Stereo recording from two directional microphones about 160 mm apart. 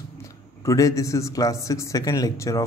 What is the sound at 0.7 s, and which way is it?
Speech, 20° left (ahead or behind).